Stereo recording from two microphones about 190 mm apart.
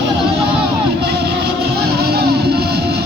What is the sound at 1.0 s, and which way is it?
Music, 60° right (ahead or behind).